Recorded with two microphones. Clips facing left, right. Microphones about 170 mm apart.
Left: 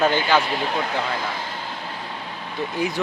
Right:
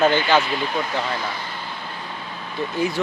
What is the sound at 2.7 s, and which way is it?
Speech, 15° left (ahead or behind).